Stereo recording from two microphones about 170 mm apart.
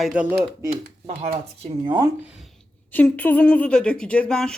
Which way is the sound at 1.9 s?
20° right (ahead or behind).